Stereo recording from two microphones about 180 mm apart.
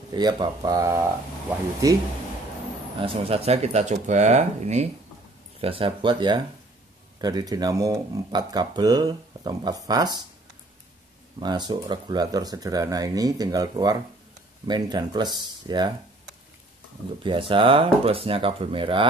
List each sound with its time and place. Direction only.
0.1 s speech: 25° right (ahead or behind)
3.0 s speech: 35° right (ahead or behind)
11.3 s speech: 25° right (ahead or behind)
17.2 s speech: 30° right (ahead or behind)